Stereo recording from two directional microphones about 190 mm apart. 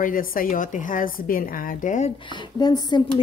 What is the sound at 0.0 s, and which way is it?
A woman's voice, 45° left (ahead or behind).